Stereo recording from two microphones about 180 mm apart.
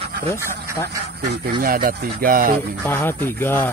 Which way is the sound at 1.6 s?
55° right (ahead or behind).